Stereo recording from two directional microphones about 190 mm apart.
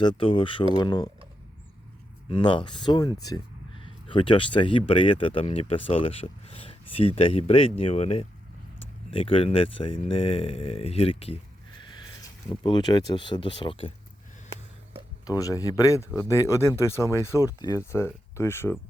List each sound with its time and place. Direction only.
0.0 s speech: 25° left (ahead or behind)
2.3 s speech: 25° left (ahead or behind)
15.3 s speech: 20° left (ahead or behind)